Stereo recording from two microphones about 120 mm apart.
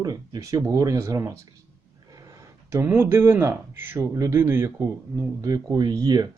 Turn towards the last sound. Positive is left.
turn(degrees=-35)  # may be behind; listen again after turning